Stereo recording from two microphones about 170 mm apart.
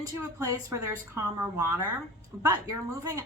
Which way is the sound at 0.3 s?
20° right (ahead or behind).